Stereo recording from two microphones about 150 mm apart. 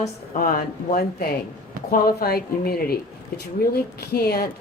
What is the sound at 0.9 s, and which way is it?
Speech, 90° left.